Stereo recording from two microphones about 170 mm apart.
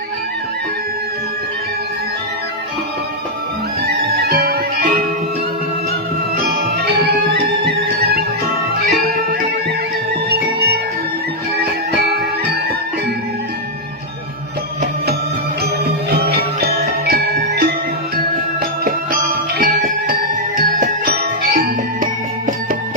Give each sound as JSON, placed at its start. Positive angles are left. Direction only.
{"t": 3.8, "sound": "music", "side_deg": -65}
{"t": 7.3, "sound": "music", "side_deg": -80}
{"t": 10.2, "sound": "music", "side_deg": -70}
{"t": 16.0, "sound": "music", "side_deg": -65}
{"t": 18.9, "sound": "music", "side_deg": -55}